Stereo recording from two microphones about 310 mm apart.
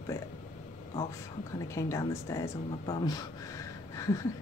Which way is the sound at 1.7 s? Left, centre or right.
Centre.